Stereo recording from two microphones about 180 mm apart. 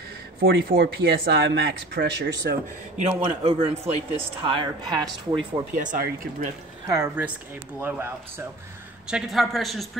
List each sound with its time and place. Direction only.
0.4 s speech: 55° right (ahead or behind)
3.0 s speech: 35° right (ahead or behind)
5.8 s speech: 45° right (ahead or behind)
6.9 s speech: 15° right (ahead or behind)
9.0 s a woman's voice: 5° right (ahead or behind)